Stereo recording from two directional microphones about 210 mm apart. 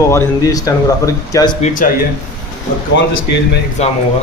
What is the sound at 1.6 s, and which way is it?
Speech, 40° left (ahead or behind).